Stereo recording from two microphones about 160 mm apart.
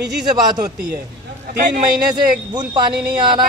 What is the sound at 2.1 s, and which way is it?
A woman's voice, 25° right (ahead or behind).